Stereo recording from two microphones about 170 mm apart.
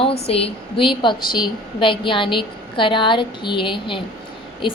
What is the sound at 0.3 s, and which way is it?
A woman's voice, 35° left (ahead or behind).